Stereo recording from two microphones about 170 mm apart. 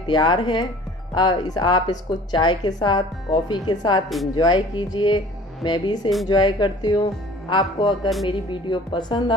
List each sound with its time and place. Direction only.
0.0 s a woman's voice: 25° left (ahead or behind)